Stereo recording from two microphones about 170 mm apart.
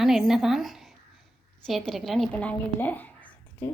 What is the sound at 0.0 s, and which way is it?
A woman's voice, centre (ahead or behind).